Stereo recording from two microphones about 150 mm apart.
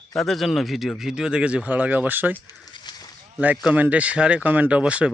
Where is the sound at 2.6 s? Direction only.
30° left (ahead or behind).